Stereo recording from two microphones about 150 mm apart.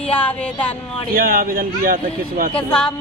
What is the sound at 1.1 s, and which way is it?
Speech, 75° right (ahead or behind).